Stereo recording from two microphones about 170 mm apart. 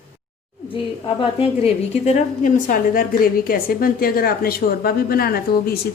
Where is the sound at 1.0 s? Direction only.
35° left (ahead or behind).